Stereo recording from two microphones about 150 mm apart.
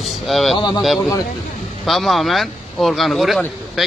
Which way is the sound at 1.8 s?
Centre (ahead or behind).